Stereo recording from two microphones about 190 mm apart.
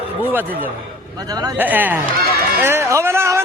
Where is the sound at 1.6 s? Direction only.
10° right (ahead or behind).